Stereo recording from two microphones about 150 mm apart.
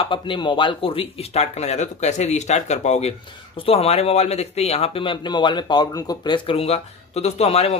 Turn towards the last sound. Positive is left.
turn(degrees=45)  # may be behind; listen again after turning